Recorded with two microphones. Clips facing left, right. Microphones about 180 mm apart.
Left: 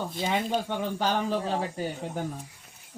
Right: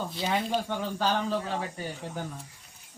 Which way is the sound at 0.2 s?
20° left (ahead or behind).